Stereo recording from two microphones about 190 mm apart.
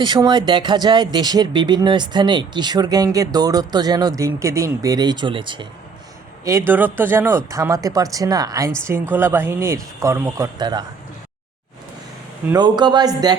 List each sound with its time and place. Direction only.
0.0 s speech: 25° right (ahead or behind)
6.4 s speech: 15° right (ahead or behind)
12.5 s speech: 20° right (ahead or behind)